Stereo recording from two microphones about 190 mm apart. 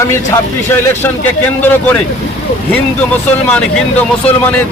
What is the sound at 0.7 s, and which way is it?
Speech, 10° left (ahead or behind).